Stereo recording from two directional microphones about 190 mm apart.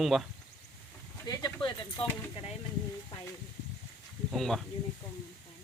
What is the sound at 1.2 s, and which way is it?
Speech, 20° left (ahead or behind).